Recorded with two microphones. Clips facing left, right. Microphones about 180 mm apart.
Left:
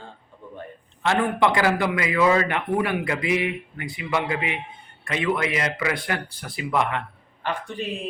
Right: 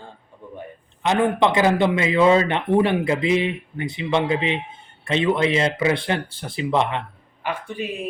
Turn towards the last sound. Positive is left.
turn(degrees=-10)  # may be behind; listen again after turning